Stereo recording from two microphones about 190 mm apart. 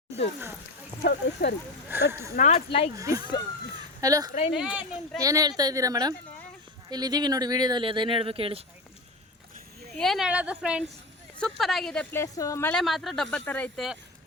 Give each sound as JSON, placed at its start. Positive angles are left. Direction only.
{"t": 1.0, "sound": "speech", "side_deg": 60}
{"t": 1.9, "sound": "speech", "side_deg": -10}
{"t": 2.3, "sound": "speech", "side_deg": 40}
{"t": 2.9, "sound": "speech", "side_deg": -20}
{"t": 4.3, "sound": "speech", "side_deg": 35}
{"t": 4.5, "sound": "speech", "side_deg": -5}
{"t": 5.2, "sound": "speech", "side_deg": -20}
{"t": 10.0, "sound": "speech", "side_deg": 0}
{"t": 12.1, "sound": "speech", "side_deg": 15}
{"t": 12.8, "sound": "speech", "side_deg": 0}